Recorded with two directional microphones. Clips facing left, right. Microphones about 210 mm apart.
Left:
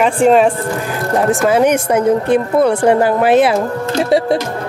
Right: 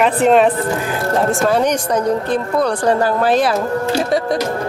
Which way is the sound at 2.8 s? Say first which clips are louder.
Left 3 dB; 20° left (ahead or behind).